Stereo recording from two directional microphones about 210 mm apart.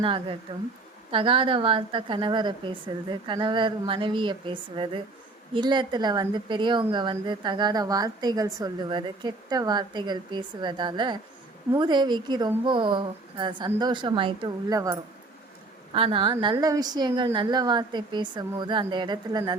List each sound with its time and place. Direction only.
0.0 s speech: 25° right (ahead or behind)
16.0 s speech: 25° right (ahead or behind)